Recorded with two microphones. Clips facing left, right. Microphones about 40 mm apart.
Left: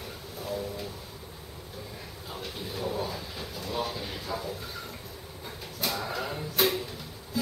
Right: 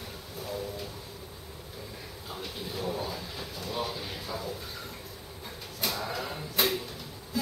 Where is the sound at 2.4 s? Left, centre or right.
Centre.